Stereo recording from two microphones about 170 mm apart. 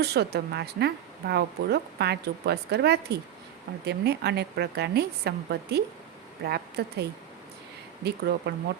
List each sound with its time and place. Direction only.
0.0 s speech: 70° right (ahead or behind)
8.0 s speech: 75° right (ahead or behind)